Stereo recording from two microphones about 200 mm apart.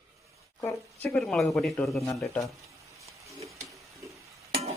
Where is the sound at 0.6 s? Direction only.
10° left (ahead or behind).